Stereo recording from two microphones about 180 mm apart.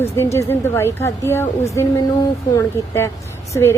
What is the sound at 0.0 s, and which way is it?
A woman's voice, 15° left (ahead or behind).